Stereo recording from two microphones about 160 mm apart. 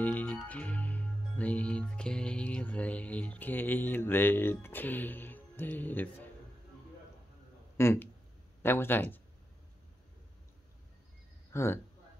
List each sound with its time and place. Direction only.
0.0 s music: 10° left (ahead or behind)
7.7 s speech: 15° left (ahead or behind)
8.6 s music: 15° left (ahead or behind)
11.5 s speech: 15° left (ahead or behind)